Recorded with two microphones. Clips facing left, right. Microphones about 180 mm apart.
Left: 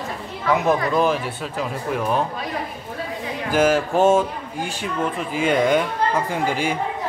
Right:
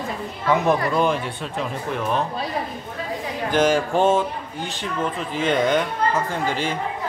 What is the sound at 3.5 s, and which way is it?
Speech, 5° left (ahead or behind).